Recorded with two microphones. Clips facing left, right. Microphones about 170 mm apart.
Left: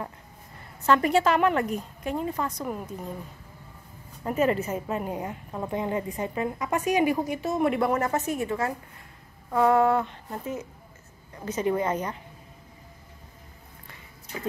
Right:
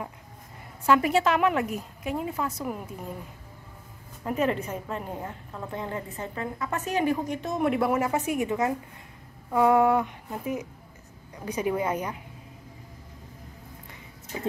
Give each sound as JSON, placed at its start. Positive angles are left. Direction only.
{"t": 0.8, "sound": "a woman's voice", "side_deg": -5}
{"t": 4.2, "sound": "a woman's voice", "side_deg": 0}
{"t": 14.3, "sound": "music", "side_deg": -20}